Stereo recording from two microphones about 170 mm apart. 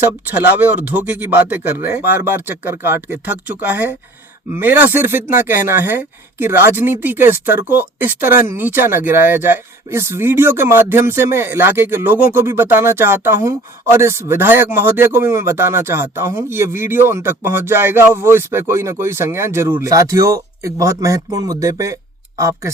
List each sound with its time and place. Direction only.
0.6 s speech: 10° right (ahead or behind)